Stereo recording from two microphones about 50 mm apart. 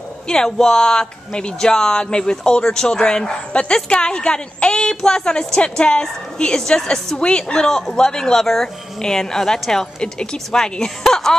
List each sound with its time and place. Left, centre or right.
0.3 s speech: centre